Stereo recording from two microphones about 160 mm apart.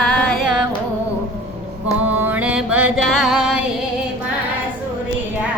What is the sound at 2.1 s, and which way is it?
Mantra, 10° right (ahead or behind).